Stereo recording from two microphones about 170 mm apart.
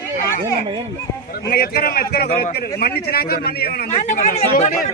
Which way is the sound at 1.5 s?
60° left (ahead or behind).